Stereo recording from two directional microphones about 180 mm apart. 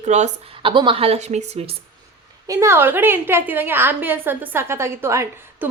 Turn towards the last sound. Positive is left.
turn(degrees=-15)  # may be behind; listen again after turning